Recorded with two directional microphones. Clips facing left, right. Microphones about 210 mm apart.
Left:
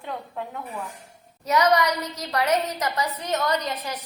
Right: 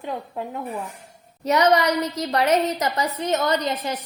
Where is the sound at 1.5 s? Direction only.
30° right (ahead or behind).